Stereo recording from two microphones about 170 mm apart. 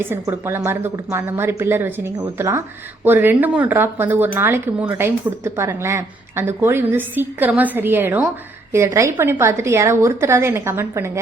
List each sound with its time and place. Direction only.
0.0 s a woman's voice: 15° right (ahead or behind)